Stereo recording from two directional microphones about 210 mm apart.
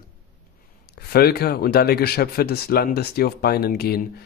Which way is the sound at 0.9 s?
50° left (ahead or behind).